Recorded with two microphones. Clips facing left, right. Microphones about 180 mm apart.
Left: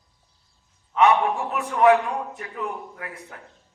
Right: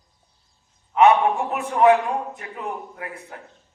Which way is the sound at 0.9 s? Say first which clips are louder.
Right 3 dB; 30° right (ahead or behind).